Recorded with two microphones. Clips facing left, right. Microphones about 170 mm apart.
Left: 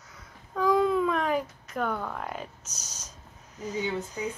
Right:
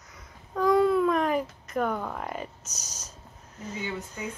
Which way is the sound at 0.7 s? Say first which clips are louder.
Right 3 dB; 5° right (ahead or behind).